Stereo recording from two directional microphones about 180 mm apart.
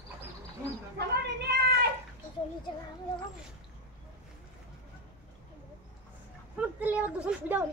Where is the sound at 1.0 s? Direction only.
65° right (ahead or behind).